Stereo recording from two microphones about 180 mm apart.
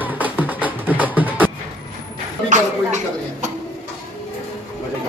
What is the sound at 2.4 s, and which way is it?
Speech, 40° right (ahead or behind).